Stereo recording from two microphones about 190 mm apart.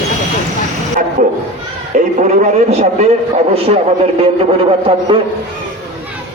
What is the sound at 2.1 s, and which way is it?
A man's voice, 40° right (ahead or behind).